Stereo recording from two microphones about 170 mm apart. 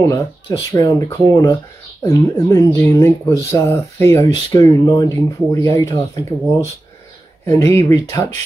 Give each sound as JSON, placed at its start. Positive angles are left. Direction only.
{"t": 0.0, "sound": "speech", "side_deg": 20}